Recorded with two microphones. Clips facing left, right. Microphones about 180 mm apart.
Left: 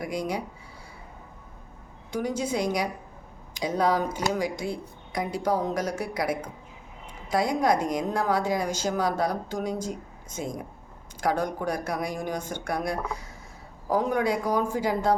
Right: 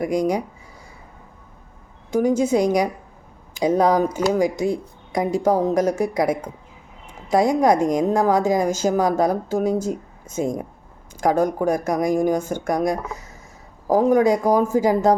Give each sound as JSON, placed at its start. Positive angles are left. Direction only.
{"t": 0.0, "sound": "speech", "side_deg": -45}
{"t": 2.0, "sound": "speech", "side_deg": -45}
{"t": 9.6, "sound": "speech", "side_deg": -10}
{"t": 11.2, "sound": "speech", "side_deg": -45}
{"t": 12.4, "sound": "speech", "side_deg": -10}
{"t": 12.6, "sound": "speech", "side_deg": -45}